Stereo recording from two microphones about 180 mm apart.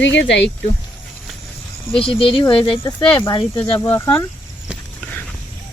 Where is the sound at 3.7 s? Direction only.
15° left (ahead or behind).